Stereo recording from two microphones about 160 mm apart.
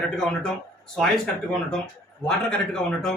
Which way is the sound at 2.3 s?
5° left (ahead or behind).